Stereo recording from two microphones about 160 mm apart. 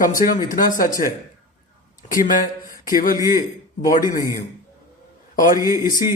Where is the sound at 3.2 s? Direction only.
20° right (ahead or behind).